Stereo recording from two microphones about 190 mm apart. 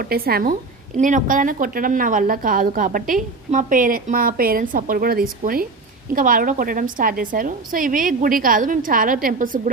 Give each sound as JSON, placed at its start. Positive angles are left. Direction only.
{"t": 0.0, "sound": "a woman's voice", "side_deg": -55}
{"t": 0.9, "sound": "a woman's voice", "side_deg": -40}